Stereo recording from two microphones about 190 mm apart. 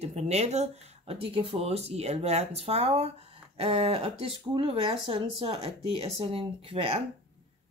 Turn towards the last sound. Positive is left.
turn(degrees=-30)  # may be behind; listen again after turning